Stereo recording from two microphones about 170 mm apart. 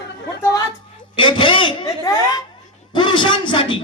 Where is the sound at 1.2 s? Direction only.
30° left (ahead or behind).